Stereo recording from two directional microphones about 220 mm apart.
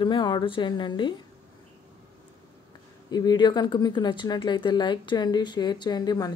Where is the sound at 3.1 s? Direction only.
20° left (ahead or behind).